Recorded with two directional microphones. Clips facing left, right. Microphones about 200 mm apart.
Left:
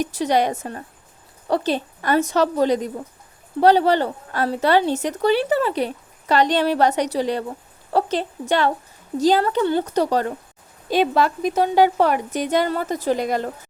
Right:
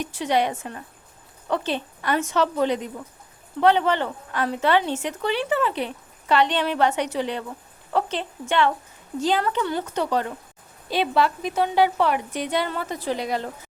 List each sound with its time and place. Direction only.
0.0 s a woman's voice: 40° left (ahead or behind)